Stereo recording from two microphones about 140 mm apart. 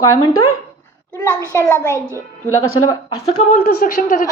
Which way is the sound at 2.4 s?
25° left (ahead or behind).